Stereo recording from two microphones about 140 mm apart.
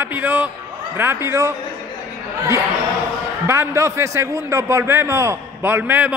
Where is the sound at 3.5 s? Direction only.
20° right (ahead or behind).